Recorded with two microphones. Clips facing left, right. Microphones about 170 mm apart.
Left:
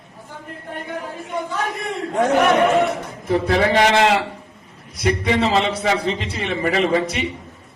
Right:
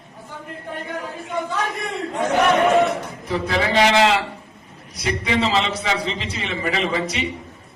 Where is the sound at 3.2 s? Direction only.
50° left (ahead or behind).